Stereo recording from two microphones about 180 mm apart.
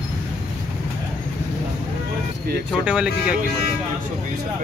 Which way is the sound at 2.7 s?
5° right (ahead or behind).